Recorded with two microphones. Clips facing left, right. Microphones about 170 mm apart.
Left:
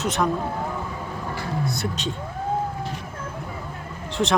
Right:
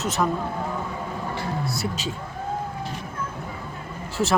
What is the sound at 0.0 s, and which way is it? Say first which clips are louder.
Speech: left 1 dB; 5° right (ahead or behind).